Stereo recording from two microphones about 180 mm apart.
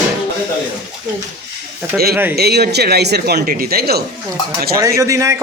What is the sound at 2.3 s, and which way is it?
Speech, 65° right (ahead or behind).